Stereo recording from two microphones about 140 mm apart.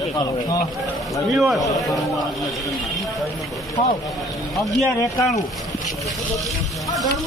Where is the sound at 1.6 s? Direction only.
25° left (ahead or behind).